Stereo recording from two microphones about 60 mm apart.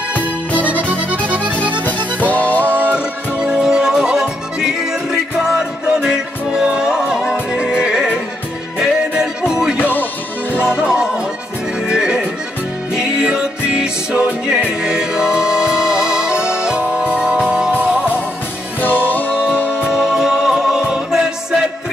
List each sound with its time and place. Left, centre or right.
0.6 s music: right
1.9 s music: left
2.6 s music: right
3.3 s music: centre
9.8 s music: left
10.6 s music: centre
11.8 s accordion: centre
12.9 s music: centre
18.8 s music: left
19.9 s music: centre